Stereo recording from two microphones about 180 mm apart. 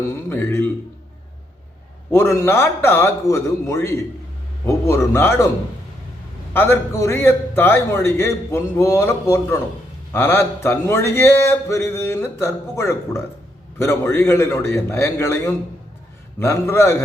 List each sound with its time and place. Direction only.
0.3 s speech: 15° left (ahead or behind)
2.0 s a man's voice: 15° left (ahead or behind)
6.5 s a man's voice: 15° left (ahead or behind)